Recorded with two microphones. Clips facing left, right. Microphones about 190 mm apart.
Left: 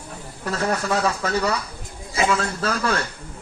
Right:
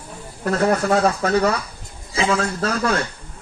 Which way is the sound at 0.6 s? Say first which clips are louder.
Right 5 dB; 45° right (ahead or behind).